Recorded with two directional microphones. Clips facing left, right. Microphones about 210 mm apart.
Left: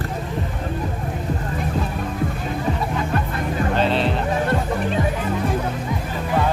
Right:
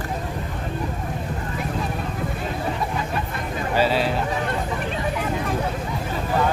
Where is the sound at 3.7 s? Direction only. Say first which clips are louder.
Right 1 dB; 5° right (ahead or behind).